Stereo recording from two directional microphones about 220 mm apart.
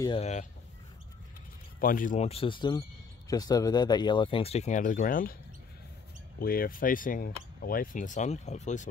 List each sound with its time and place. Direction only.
0.0 s speech: 25° left (ahead or behind)
1.8 s speech: 40° left (ahead or behind)
6.4 s speech: 40° left (ahead or behind)